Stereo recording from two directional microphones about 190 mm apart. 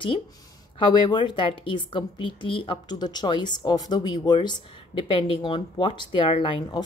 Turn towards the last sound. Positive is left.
turn(degrees=25)  # may be behind; listen again after turning